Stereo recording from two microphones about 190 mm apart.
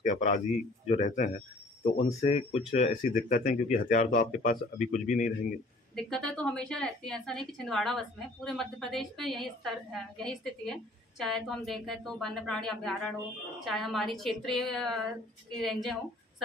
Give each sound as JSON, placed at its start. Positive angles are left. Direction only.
{"t": 0.0, "sound": "speech", "side_deg": 40}
{"t": 5.9, "sound": "a woman's voice", "side_deg": 5}